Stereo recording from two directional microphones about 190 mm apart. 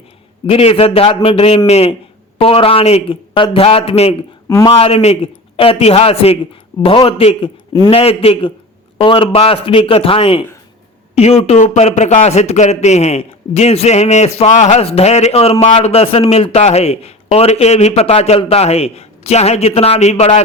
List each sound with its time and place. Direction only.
0.4 s a man's voice: 30° left (ahead or behind)
4.4 s speech: 15° left (ahead or behind)
4.8 s a man's voice: 30° left (ahead or behind)